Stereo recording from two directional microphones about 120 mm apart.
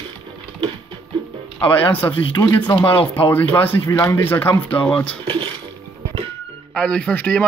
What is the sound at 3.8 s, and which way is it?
A man's voice, 25° left (ahead or behind).